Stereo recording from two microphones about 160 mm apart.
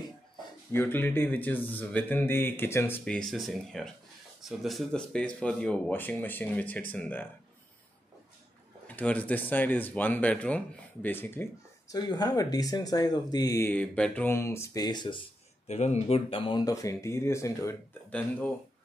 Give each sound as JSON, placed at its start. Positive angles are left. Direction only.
{"t": 0.7, "sound": "speech", "side_deg": 15}
{"t": 8.8, "sound": "speech", "side_deg": 10}
{"t": 11.9, "sound": "speech", "side_deg": 25}
{"t": 13.7, "sound": "speech", "side_deg": 10}
{"t": 15.6, "sound": "speech", "side_deg": 45}